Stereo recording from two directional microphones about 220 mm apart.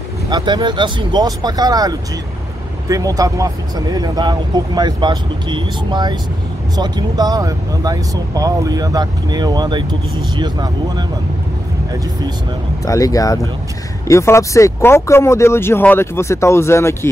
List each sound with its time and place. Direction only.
0.3 s speech: 20° right (ahead or behind)
12.8 s speech: 15° left (ahead or behind)